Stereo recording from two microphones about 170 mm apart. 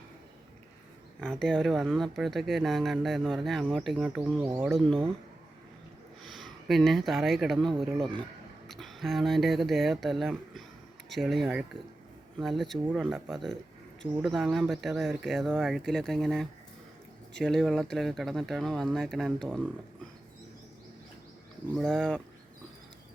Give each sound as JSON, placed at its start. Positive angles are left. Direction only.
{"t": 1.2, "sound": "speech", "side_deg": 5}
{"t": 6.2, "sound": "speech", "side_deg": 0}
{"t": 8.0, "sound": "speech", "side_deg": -30}
{"t": 8.6, "sound": "speech", "side_deg": 0}
{"t": 21.8, "sound": "speech", "side_deg": 0}